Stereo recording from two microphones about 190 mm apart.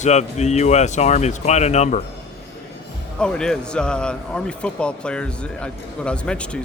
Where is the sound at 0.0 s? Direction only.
35° left (ahead or behind).